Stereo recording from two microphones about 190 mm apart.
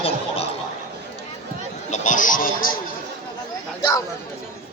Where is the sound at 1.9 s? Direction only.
45° left (ahead or behind).